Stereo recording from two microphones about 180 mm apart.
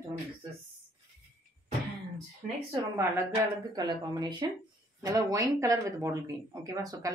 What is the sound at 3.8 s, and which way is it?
Speech, 25° right (ahead or behind).